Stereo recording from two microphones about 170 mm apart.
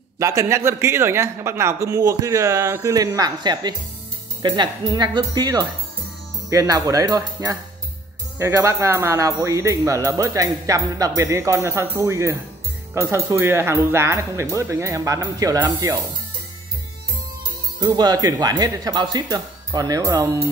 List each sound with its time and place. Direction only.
0.2 s speech: 20° right (ahead or behind)
17.7 s speech: 25° right (ahead or behind)